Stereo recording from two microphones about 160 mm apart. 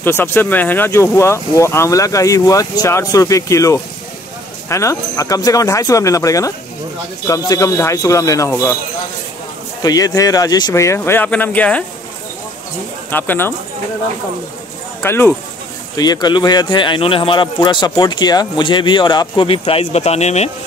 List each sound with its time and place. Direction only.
0.0 s speech: 15° left (ahead or behind)
9.8 s speech: 25° left (ahead or behind)
13.1 s speech: 10° left (ahead or behind)
15.0 s speech: 15° left (ahead or behind)
16.0 s speech: 25° left (ahead or behind); by 20.5 s 45° left (ahead or behind)